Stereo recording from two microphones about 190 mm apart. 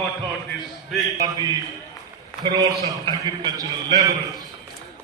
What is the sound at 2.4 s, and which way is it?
A man's voice, 20° right (ahead or behind).